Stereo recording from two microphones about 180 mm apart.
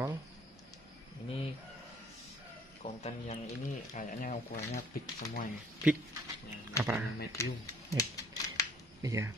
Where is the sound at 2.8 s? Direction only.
40° left (ahead or behind).